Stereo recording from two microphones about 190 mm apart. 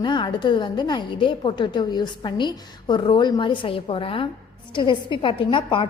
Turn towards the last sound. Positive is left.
turn(degrees=25)  # may be behind; listen again after turning